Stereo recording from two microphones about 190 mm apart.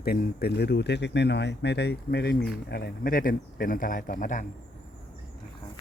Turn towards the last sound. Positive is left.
turn(degrees=45)  # may be behind; listen again after turning